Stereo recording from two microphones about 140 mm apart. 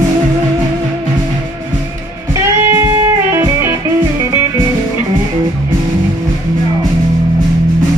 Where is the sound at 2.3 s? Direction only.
15° right (ahead or behind).